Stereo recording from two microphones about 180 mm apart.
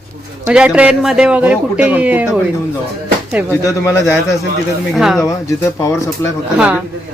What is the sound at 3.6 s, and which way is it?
Speech, 15° left (ahead or behind).